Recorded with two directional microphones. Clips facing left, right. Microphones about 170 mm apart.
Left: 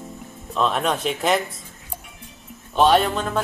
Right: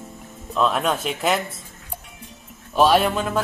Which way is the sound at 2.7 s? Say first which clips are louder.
Even; 10° right (ahead or behind).